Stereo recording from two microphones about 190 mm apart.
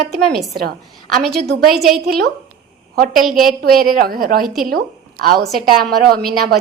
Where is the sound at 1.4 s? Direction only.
60° right (ahead or behind).